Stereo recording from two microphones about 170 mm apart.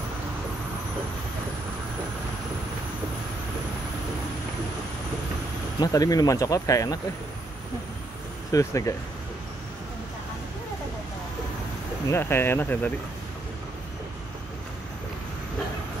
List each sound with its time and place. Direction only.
5.8 s speech: 20° left (ahead or behind)
8.5 s speech: 20° left (ahead or behind)
12.1 s speech: 15° left (ahead or behind)